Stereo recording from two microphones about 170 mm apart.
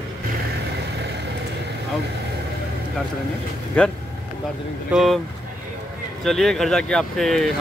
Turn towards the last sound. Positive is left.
turn(degrees=0)  # may be behind; listen again after turning